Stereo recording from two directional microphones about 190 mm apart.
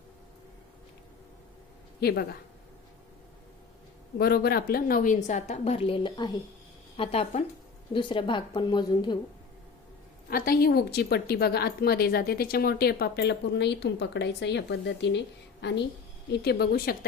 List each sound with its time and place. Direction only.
2.0 s speech: 55° left (ahead or behind)
4.2 s a woman's voice: 55° left (ahead or behind); by 9.1 s 25° left (ahead or behind)
10.2 s a woman's voice: 50° left (ahead or behind)